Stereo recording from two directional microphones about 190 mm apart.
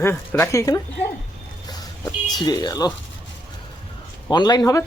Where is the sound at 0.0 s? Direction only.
15° left (ahead or behind).